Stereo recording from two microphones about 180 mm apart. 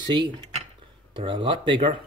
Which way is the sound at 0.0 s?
25° right (ahead or behind).